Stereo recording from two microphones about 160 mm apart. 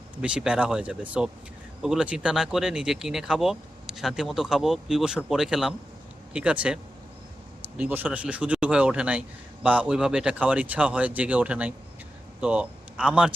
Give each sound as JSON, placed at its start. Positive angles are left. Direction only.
{"t": 0.2, "sound": "speech", "side_deg": -5}
{"t": 7.8, "sound": "a man's voice", "side_deg": -10}